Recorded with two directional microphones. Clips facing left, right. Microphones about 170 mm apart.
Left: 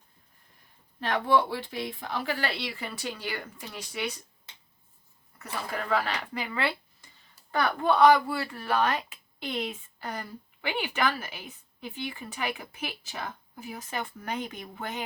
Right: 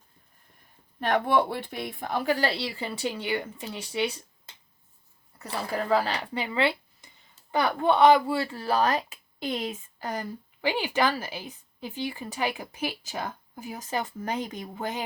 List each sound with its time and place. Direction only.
0.9 s speech: 50° right (ahead or behind); by 4.2 s 30° right (ahead or behind)
5.4 s speech: 35° right (ahead or behind)